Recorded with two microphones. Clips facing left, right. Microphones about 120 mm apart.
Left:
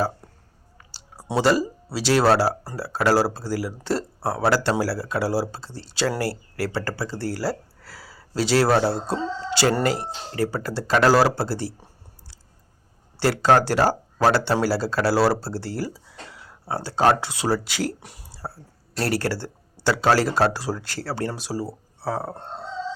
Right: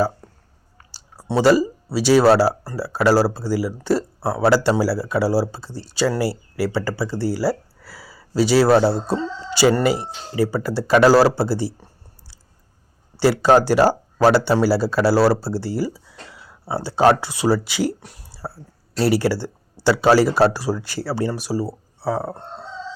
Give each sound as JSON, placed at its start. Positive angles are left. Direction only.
{"t": 0.8, "sound": "a sound", "side_deg": -40}
{"t": 1.3, "sound": "speech", "side_deg": 0}
{"t": 13.1, "sound": "speech", "side_deg": -5}